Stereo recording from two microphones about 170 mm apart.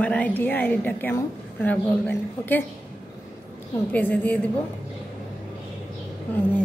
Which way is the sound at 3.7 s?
10° left (ahead or behind).